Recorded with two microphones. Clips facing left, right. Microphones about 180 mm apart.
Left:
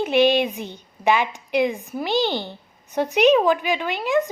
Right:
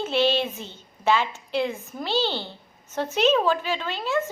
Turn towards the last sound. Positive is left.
turn(degrees=15)  # may be behind; listen again after turning